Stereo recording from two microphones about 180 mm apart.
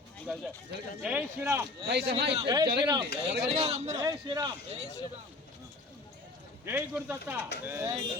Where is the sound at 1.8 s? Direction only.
70° right (ahead or behind).